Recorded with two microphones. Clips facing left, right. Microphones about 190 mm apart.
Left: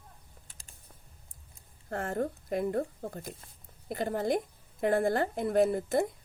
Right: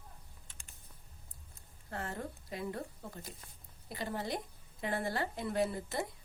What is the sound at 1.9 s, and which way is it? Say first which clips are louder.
A woman's voice: left 9 dB; 50° left (ahead or behind).